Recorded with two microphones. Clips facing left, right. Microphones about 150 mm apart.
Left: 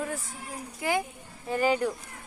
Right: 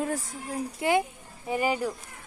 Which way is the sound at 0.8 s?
25° right (ahead or behind).